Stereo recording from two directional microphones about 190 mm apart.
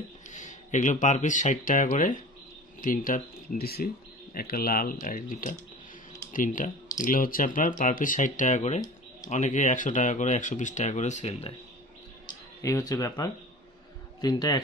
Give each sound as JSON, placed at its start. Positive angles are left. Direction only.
{"t": 0.3, "sound": "speech", "side_deg": 40}
{"t": 12.6, "sound": "a man's voice", "side_deg": 15}